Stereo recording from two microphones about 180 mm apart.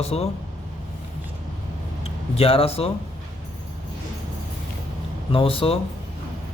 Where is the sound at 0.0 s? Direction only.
35° left (ahead or behind).